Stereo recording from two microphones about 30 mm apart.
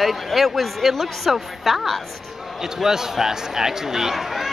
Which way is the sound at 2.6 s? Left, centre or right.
Centre.